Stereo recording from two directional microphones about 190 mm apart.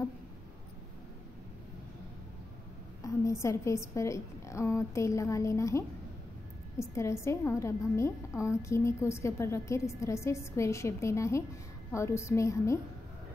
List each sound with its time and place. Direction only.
3.0 s a woman's voice: 15° left (ahead or behind)